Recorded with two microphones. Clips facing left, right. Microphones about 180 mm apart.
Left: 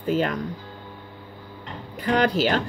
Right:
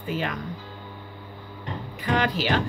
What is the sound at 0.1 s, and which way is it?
Speech, 40° left (ahead or behind).